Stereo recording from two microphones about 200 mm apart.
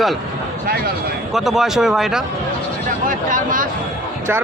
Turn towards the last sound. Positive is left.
turn(degrees=-40)  # may be behind; listen again after turning